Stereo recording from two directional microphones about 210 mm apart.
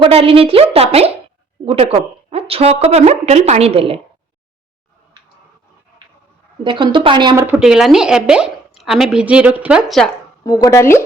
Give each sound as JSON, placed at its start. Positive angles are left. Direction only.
{"t": 0.0, "sound": "a woman's voice", "side_deg": -25}
{"t": 6.7, "sound": "a woman's voice", "side_deg": -25}
{"t": 7.4, "sound": "speech", "side_deg": -5}
{"t": 10.4, "sound": "a woman's voice", "side_deg": 15}